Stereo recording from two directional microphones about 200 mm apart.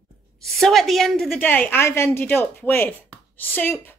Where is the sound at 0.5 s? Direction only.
Centre (ahead or behind).